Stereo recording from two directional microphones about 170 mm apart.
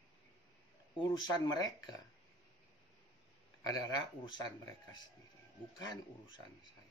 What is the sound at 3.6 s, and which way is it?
Speech, 20° left (ahead or behind).